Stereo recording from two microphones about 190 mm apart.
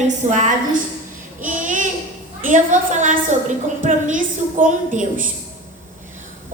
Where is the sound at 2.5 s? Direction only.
40° right (ahead or behind).